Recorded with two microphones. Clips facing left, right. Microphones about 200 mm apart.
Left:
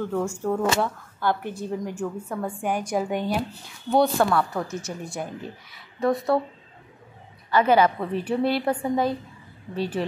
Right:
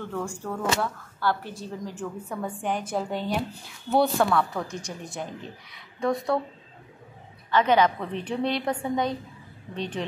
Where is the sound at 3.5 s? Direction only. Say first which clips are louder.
Left 2 dB; centre (ahead or behind).